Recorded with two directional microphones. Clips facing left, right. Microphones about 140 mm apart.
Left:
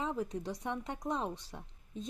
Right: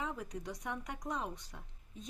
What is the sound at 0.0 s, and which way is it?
Speech, 25° left (ahead or behind).